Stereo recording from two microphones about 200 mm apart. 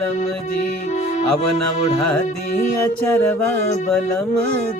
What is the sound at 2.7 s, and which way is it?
Music, 10° left (ahead or behind).